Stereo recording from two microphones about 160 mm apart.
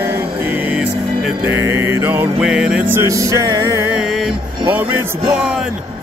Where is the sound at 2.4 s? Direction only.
5° right (ahead or behind); by 3.9 s 20° right (ahead or behind).